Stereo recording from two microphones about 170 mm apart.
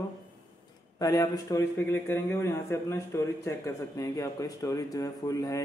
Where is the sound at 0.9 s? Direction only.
20° left (ahead or behind).